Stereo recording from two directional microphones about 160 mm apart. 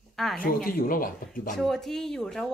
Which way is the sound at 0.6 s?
60° left (ahead or behind).